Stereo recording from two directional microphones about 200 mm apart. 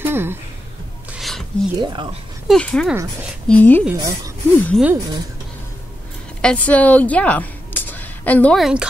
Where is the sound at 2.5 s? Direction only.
5° left (ahead or behind).